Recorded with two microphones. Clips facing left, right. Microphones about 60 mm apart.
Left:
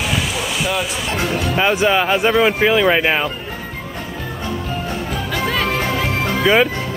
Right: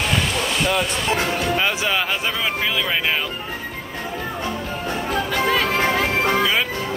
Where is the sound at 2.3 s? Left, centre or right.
Left.